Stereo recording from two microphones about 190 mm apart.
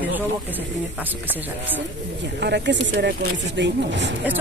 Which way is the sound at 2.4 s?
65° right (ahead or behind).